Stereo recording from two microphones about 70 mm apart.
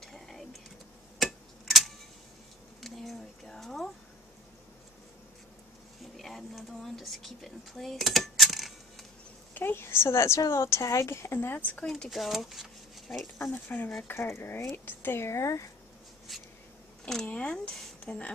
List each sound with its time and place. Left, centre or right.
0.0 s a sound: centre
1.2 s tick-tock: centre
2.8 s a sound: centre
6.1 s a sound: centre
9.5 s a woman's voice: left
11.3 s speech: left
11.7 s speech: centre
13.5 s speech: left
14.0 s a woman's voice: left
17.0 s speech: centre